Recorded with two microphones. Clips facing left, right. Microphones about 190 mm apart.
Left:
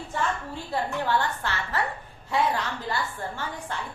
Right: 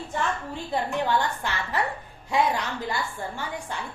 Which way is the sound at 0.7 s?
15° right (ahead or behind).